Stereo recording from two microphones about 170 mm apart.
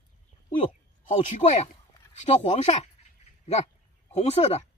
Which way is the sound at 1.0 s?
45° left (ahead or behind).